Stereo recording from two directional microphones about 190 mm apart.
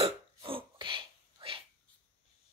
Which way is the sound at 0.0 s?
30° right (ahead or behind).